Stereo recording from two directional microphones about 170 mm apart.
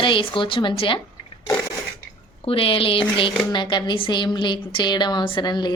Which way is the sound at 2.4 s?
30° left (ahead or behind).